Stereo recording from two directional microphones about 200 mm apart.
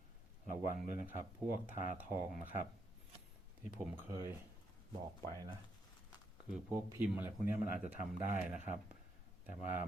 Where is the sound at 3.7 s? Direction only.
10° right (ahead or behind).